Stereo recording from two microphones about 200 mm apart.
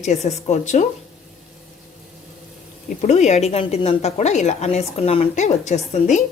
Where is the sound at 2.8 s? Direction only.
35° left (ahead or behind).